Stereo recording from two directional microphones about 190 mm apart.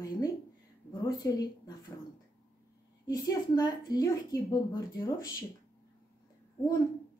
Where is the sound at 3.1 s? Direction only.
20° left (ahead or behind).